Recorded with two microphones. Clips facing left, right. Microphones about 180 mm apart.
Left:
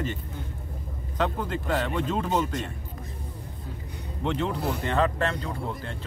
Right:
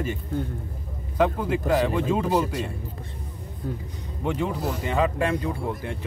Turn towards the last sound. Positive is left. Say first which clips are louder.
# right 4 dB
turn(degrees=-15)  # may be behind; listen again after turning